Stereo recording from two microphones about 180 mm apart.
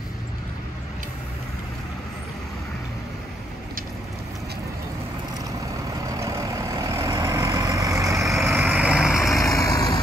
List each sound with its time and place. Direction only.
6.1 s vehicle: 15° right (ahead or behind)
8.2 s vehicle: centre (ahead or behind)
9.3 s vehicle: 20° left (ahead or behind)